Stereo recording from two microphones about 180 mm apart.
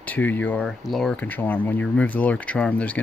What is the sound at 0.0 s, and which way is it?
Speech, 10° left (ahead or behind).